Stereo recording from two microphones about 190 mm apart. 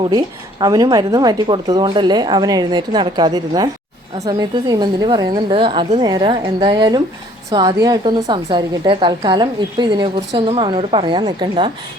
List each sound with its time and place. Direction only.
0.6 s a woman's voice: 20° right (ahead or behind)